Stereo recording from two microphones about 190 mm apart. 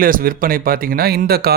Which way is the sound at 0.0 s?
50° right (ahead or behind).